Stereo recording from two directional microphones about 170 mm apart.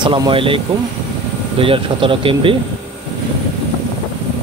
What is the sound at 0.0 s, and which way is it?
Speech, 30° right (ahead or behind).